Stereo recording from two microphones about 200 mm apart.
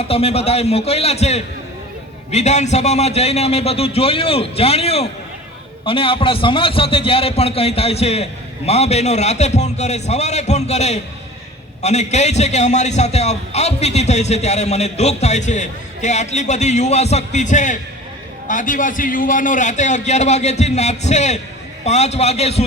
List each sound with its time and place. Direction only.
0.0 s a man's voice: 30° left (ahead or behind)